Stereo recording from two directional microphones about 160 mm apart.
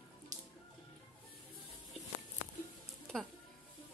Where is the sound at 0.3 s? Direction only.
50° right (ahead or behind).